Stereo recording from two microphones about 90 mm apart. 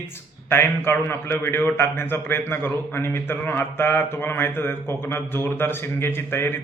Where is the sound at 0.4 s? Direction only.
25° left (ahead or behind).